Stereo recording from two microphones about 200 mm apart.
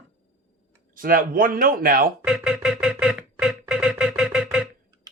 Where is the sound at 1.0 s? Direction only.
45° right (ahead or behind).